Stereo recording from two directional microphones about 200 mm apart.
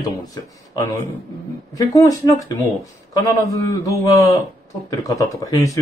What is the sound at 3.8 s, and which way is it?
Speech, 15° left (ahead or behind).